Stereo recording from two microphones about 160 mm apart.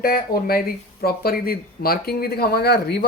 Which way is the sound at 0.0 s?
70° left (ahead or behind).